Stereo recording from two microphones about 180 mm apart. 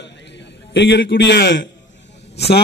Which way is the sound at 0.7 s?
85° left.